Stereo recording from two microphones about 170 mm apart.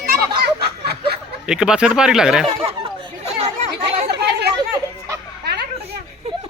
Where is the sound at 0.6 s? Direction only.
70° right (ahead or behind).